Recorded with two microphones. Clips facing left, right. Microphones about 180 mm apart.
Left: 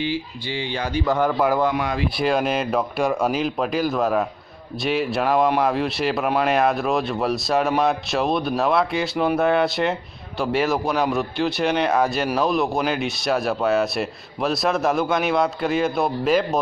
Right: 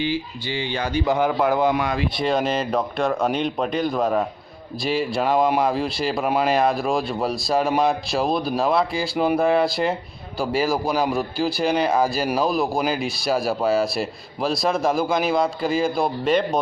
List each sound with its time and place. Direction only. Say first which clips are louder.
1.0 s speech: even; 10° right (ahead or behind)
2.1 s a man's voice: left 2 dB; 5° left (ahead or behind)